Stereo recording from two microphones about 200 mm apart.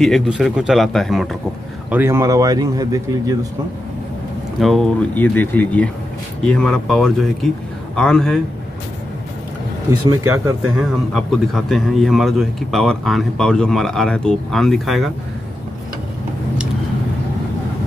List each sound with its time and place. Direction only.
0.0 s a man's voice: centre (ahead or behind)
1.9 s a man's voice: 10° right (ahead or behind)
4.6 s a man's voice: centre (ahead or behind)
10.0 s a man's voice: 15° right (ahead or behind)
11.1 s a man's voice: centre (ahead or behind)